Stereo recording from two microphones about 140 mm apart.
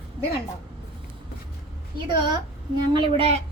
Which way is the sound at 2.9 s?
40° right (ahead or behind).